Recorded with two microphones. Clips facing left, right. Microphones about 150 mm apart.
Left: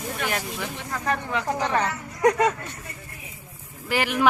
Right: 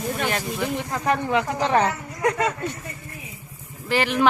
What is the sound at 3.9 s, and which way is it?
Speech, 10° left (ahead or behind).